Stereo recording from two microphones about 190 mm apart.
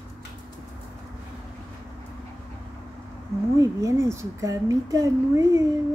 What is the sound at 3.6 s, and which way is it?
Speech, 15° right (ahead or behind).